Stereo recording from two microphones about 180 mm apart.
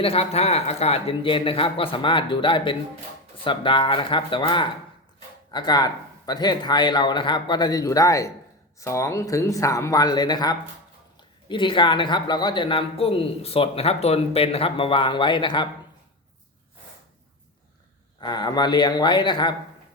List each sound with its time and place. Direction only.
0.0 s a man's voice: 35° left (ahead or behind)
18.2 s speech: 25° left (ahead or behind)